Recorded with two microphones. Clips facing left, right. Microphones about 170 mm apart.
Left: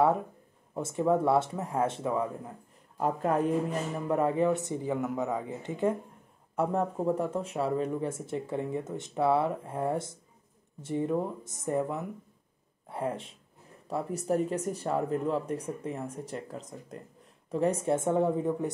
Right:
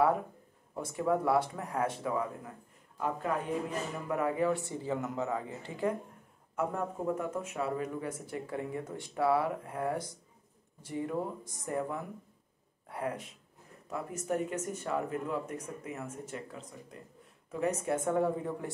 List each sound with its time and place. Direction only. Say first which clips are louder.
0.7 s speech: left 4 dB; 25° left (ahead or behind)
3.0 s speech: left 5 dB; 40° left (ahead or behind)
4.1 s speech: left 4 dB; 30° left (ahead or behind)
6.5 s speech: left 5 dB; 30° left (ahead or behind)